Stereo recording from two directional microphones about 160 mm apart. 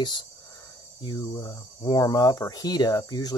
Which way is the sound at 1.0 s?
25° left (ahead or behind).